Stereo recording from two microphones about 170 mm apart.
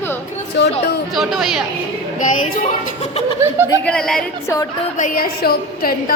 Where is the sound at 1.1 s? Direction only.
Centre (ahead or behind).